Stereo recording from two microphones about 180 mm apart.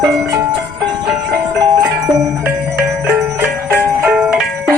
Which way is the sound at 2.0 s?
20° right (ahead or behind).